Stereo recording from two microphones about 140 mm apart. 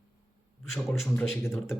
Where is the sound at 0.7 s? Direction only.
5° left (ahead or behind).